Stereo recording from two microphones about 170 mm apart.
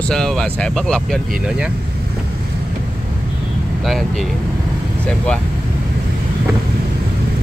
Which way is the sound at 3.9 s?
Centre (ahead or behind).